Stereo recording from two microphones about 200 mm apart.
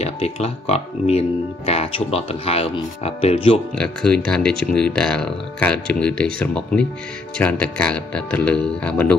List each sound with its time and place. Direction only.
0.0 s speech: 30° left (ahead or behind)
3.7 s speech: 5° left (ahead or behind)